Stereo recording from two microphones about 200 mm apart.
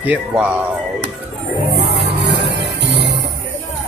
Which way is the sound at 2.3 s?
60° right (ahead or behind).